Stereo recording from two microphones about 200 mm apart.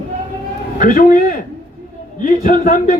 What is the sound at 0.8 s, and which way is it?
A man's voice, 40° left (ahead or behind).